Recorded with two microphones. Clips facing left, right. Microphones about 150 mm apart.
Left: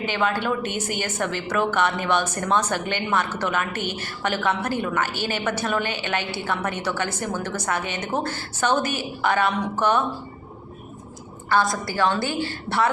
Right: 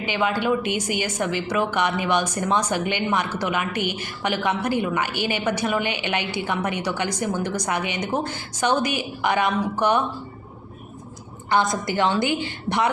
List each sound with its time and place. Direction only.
0.0 s a woman's voice: 10° right (ahead or behind)
11.4 s a woman's voice: 20° right (ahead or behind)